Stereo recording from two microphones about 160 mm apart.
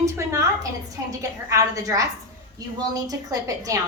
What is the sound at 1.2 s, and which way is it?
A woman's voice, 20° right (ahead or behind).